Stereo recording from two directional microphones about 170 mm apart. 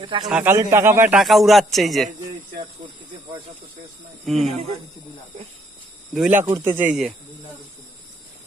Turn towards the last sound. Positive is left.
turn(degrees=-10)  # may be behind; listen again after turning